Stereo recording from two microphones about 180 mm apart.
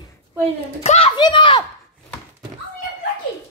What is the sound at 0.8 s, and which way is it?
Speech, 35° left (ahead or behind).